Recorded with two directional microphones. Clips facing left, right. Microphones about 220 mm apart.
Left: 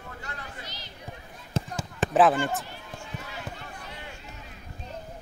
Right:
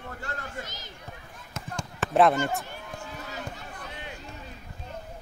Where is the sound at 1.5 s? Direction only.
30° left (ahead or behind).